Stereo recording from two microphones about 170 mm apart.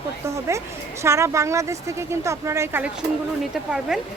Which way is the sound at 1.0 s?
15° right (ahead or behind).